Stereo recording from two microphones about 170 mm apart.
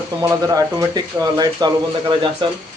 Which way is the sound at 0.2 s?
20° right (ahead or behind).